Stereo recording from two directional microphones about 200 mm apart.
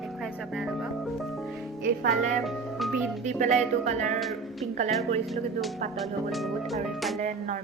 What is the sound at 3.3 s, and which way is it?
Speech, 35° right (ahead or behind).